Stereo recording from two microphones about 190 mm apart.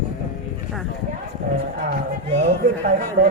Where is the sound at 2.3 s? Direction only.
35° right (ahead or behind).